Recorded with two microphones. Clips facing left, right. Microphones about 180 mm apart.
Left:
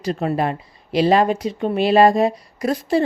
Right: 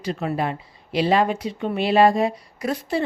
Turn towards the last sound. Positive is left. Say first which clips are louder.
# left 5 dB
turn(degrees=40)  # may be behind; listen again after turning